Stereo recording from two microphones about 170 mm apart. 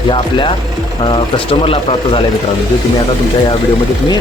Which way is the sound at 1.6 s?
30° left (ahead or behind).